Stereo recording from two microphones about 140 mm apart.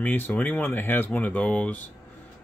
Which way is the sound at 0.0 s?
10° left (ahead or behind).